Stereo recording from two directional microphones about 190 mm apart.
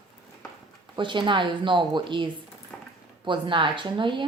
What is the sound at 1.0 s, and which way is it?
Speech, 25° right (ahead or behind).